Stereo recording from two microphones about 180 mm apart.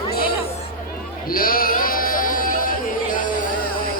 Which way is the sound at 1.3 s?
55° left (ahead or behind).